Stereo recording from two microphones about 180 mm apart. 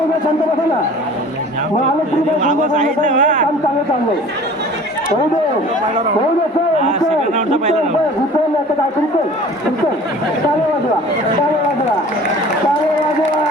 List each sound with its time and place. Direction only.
2.4 s speech: 45° right (ahead or behind)
7.3 s a man's voice: 40° right (ahead or behind)